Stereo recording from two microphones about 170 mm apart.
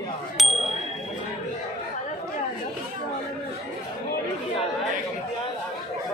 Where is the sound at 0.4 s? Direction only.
Centre (ahead or behind).